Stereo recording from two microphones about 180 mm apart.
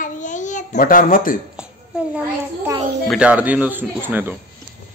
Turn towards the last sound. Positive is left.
turn(degrees=-10)  # may be behind; listen again after turning